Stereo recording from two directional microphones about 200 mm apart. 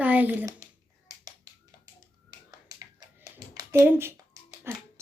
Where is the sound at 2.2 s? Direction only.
20° right (ahead or behind).